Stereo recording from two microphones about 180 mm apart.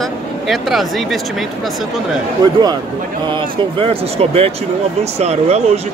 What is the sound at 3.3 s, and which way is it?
Speech, 25° right (ahead or behind).